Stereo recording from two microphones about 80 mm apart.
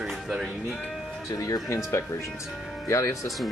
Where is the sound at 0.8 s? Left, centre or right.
Centre.